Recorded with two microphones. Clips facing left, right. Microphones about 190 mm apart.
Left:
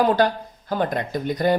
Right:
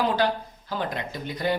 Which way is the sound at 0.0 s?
50° left (ahead or behind).